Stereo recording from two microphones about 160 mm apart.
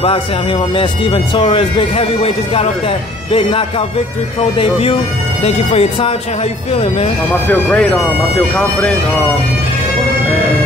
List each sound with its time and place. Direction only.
0.7 s speech: 30° left (ahead or behind)
7.4 s speech: 10° left (ahead or behind)